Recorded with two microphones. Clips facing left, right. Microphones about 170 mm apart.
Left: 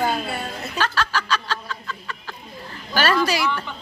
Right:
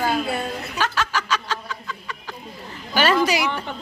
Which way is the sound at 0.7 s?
15° right (ahead or behind).